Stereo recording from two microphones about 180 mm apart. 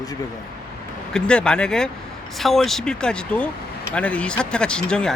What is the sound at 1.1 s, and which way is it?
Speech, 5° left (ahead or behind).